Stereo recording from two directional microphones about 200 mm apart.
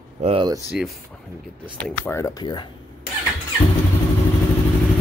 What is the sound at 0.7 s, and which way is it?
Speech, centre (ahead or behind).